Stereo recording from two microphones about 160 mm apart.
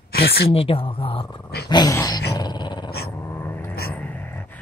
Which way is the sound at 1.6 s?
25° left (ahead or behind).